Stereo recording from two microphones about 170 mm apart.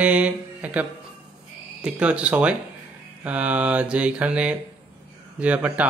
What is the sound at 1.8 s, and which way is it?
Mantra, 5° right (ahead or behind).